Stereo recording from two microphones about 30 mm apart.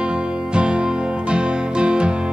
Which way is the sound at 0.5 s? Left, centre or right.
Right.